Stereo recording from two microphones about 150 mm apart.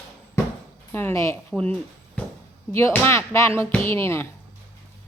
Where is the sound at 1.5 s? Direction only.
10° left (ahead or behind).